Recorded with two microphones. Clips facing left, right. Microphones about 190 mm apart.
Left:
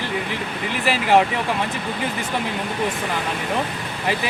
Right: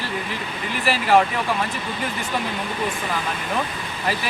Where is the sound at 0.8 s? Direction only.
15° left (ahead or behind).